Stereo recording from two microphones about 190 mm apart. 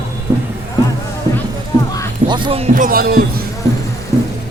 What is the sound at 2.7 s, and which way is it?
Speech, 50° right (ahead or behind).